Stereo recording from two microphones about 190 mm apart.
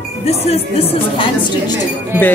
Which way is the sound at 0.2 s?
35° left (ahead or behind).